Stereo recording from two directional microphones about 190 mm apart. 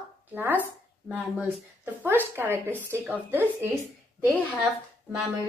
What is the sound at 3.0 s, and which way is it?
Speech, 10° left (ahead or behind).